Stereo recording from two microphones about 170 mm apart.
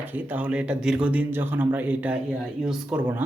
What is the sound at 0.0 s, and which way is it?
Speech, 10° right (ahead or behind).